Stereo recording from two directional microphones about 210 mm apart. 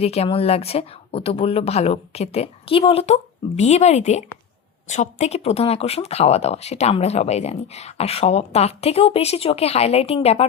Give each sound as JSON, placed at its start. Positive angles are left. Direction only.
{"t": 0.0, "sound": "speech", "side_deg": 30}